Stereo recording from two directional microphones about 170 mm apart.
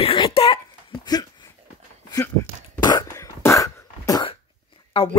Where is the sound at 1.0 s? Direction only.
20° left (ahead or behind).